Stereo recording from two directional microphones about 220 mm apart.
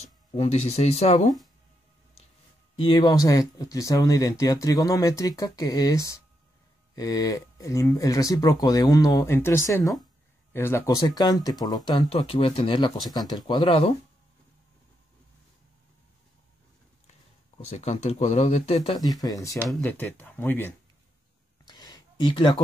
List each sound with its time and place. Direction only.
0.0 s speech: 30° left (ahead or behind)
2.7 s speech: 20° left (ahead or behind)
17.6 s speech: 30° left (ahead or behind)
18.8 s speech: 15° left (ahead or behind)
21.6 s a sound: 20° left (ahead or behind)